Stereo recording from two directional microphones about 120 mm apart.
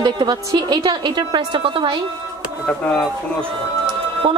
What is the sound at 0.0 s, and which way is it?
A woman's voice, 35° right (ahead or behind).